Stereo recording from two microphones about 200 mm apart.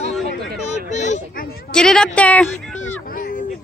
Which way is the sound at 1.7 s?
5° left (ahead or behind).